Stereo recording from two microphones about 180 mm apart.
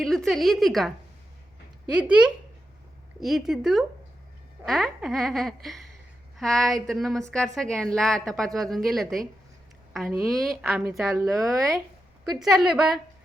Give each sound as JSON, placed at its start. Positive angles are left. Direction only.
{"t": 0.0, "sound": "a woman's voice", "side_deg": 0}
{"t": 10.2, "sound": "a woman's voice", "side_deg": 0}
{"t": 11.5, "sound": "speech", "side_deg": -20}
{"t": 12.5, "sound": "a woman's voice", "side_deg": 0}